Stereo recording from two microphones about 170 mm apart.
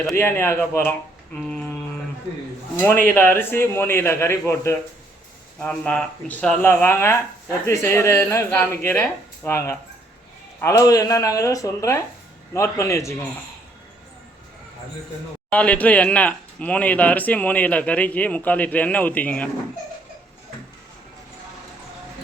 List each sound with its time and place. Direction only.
0.0 s speech: 15° left (ahead or behind)
2.7 s speech: 10° left (ahead or behind)
5.5 s speech: 5° left (ahead or behind)
15.4 s speech: 5° left (ahead or behind)